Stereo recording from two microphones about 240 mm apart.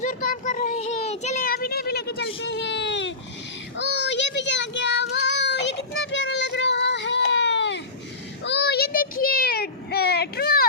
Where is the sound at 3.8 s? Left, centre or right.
Left.